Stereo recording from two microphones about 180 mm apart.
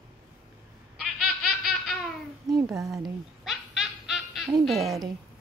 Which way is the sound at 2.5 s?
15° right (ahead or behind).